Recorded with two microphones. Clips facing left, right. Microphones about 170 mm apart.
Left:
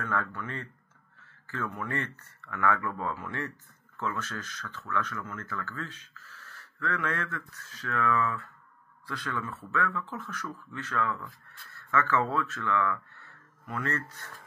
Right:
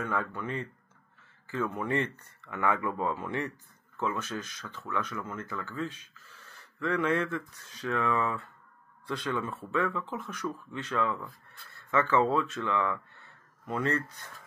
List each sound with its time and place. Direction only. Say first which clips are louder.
0.0 s speech: right 1 dB; 15° right (ahead or behind)